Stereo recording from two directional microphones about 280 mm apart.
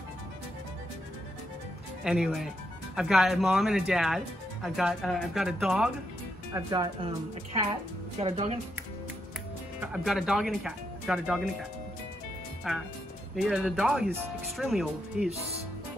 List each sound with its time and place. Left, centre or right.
2.0 s speech: centre
6.5 s speech: centre
8.2 s speech: right
9.8 s speech: centre
12.7 s speech: centre